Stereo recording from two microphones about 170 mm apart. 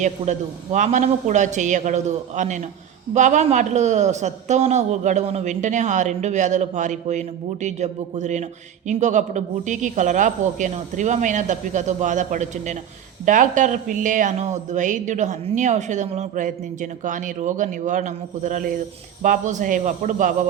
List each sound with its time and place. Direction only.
0.0 s speech: 45° right (ahead or behind)